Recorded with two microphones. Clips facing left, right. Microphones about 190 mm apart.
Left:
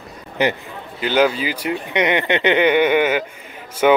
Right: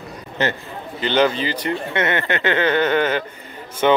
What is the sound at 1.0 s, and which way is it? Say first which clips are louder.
Speech: left 1 dB; 5° left (ahead or behind).